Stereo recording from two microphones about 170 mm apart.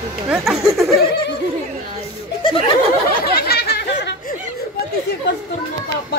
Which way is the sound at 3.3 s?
70° left (ahead or behind).